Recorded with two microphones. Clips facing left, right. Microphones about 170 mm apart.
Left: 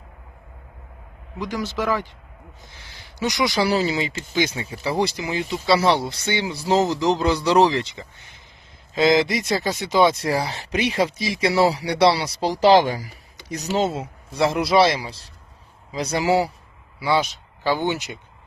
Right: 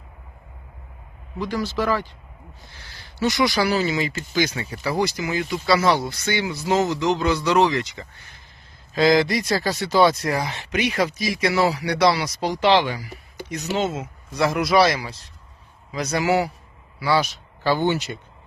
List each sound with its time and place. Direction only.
1.4 s speech: 20° left (ahead or behind)
3.7 s speech: 35° left (ahead or behind)
17.0 s speech: 20° left (ahead or behind)